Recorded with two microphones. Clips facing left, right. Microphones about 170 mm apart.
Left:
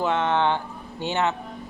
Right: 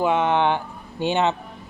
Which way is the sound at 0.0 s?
10° right (ahead or behind).